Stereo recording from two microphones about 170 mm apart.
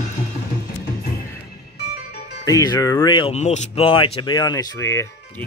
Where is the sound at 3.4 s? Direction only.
40° left (ahead or behind); by 5.0 s 15° left (ahead or behind).